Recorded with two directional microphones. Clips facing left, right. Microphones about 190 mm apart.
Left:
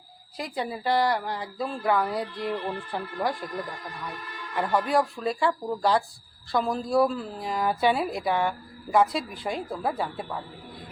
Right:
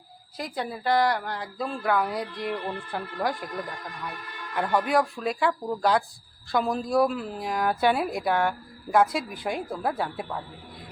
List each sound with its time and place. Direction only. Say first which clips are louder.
0.3 s a woman's voice: left 1 dB; centre (ahead or behind)
4.5 s a woman's voice: even; centre (ahead or behind)
7.1 s speech: right 1 dB; 15° right (ahead or behind)
7.4 s a woman's voice: even; centre (ahead or behind)